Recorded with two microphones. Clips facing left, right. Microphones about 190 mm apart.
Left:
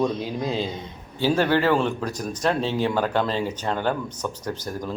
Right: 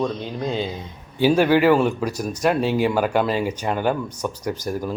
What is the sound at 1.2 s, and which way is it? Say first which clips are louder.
Speech: right 4 dB; 10° right (ahead or behind).